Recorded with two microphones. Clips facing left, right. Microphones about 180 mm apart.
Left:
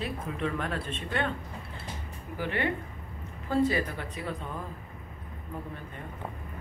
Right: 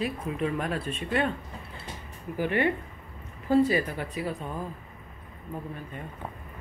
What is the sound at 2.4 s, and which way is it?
Speech, 15° right (ahead or behind).